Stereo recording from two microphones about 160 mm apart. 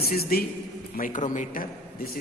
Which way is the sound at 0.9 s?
55° left (ahead or behind).